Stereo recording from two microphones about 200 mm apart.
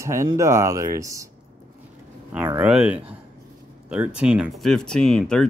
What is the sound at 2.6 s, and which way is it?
Speech, 5° right (ahead or behind).